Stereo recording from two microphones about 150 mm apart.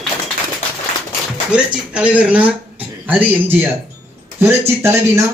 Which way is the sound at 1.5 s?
5° right (ahead or behind).